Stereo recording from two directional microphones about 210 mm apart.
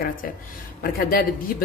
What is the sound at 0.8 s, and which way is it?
Speech, 45° left (ahead or behind).